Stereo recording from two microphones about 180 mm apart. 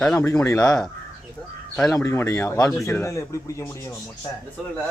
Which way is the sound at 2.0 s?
15° left (ahead or behind).